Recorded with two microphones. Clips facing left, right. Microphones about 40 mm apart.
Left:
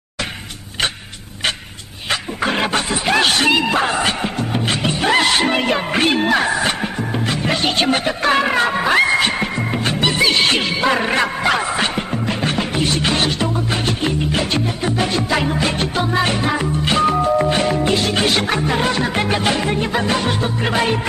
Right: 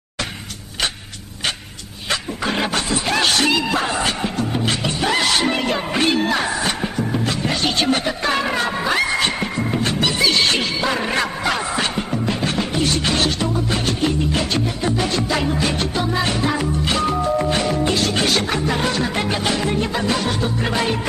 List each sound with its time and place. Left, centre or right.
2.0 s music: left